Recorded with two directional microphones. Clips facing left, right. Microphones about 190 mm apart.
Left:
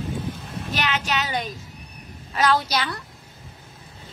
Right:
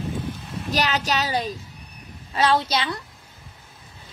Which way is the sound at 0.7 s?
40° right (ahead or behind).